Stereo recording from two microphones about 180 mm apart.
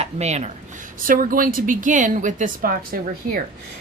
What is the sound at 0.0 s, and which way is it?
Speech, 35° right (ahead or behind).